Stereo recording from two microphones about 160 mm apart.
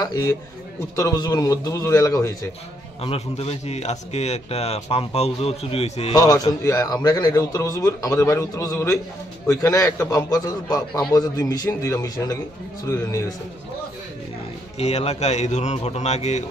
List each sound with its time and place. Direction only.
0.0 s a man's voice: 20° left (ahead or behind)
3.0 s a man's voice: 40° left (ahead or behind)
6.1 s a man's voice: 25° left (ahead or behind)
14.8 s a man's voice: 40° left (ahead or behind)